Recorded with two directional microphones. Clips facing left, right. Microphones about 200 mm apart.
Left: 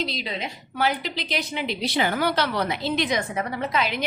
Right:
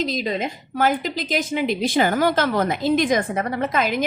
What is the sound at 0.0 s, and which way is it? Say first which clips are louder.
A woman's voice: right 6 dB; 45° right (ahead or behind).